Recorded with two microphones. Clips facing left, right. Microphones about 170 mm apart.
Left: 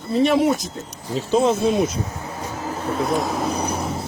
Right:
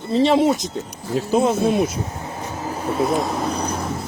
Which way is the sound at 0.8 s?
5° right (ahead or behind).